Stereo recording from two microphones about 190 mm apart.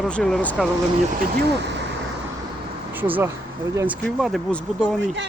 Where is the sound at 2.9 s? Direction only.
10° right (ahead or behind).